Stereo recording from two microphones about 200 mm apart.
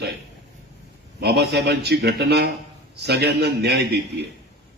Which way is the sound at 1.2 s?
55° right (ahead or behind).